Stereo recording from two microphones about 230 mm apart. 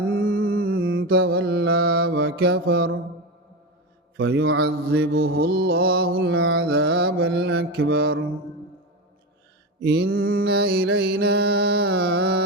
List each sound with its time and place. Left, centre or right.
0.1 s a sound: right
1.0 s mantra: right
4.2 s mantra: right
9.8 s mantra: right